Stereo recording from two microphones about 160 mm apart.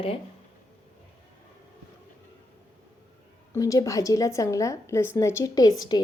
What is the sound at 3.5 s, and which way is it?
A woman's voice, 20° left (ahead or behind).